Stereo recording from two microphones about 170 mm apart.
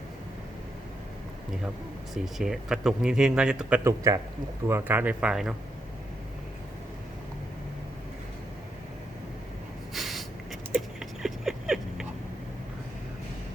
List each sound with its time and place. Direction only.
2.2 s speech: 5° right (ahead or behind)
3.8 s a man's voice: 20° right (ahead or behind)
9.9 s a sound: centre (ahead or behind)